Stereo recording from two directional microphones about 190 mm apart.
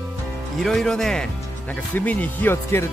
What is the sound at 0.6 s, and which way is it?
Speech, 5° left (ahead or behind).